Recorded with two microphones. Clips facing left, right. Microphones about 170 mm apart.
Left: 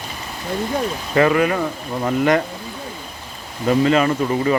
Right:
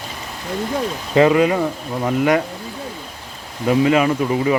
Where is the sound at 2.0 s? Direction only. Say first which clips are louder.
Even; 5° right (ahead or behind).